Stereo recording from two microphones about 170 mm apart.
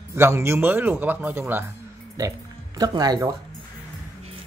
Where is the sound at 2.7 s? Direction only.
20° right (ahead or behind).